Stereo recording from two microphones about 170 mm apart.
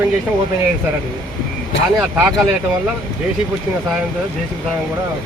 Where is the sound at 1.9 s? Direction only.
10° right (ahead or behind).